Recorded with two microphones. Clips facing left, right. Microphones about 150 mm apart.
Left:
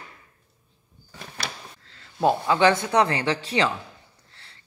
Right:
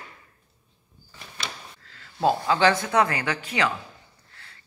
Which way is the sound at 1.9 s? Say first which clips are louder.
Left 1 dB; 25° left (ahead or behind).